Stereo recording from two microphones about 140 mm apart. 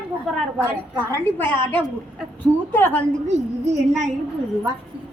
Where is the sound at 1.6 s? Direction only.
35° right (ahead or behind).